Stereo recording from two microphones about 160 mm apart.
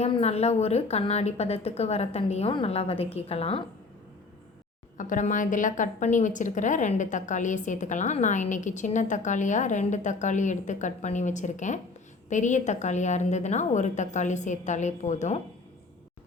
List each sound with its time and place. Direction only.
0.0 s a woman's voice: 40° left (ahead or behind)
4.9 s a woman's voice: 55° left (ahead or behind)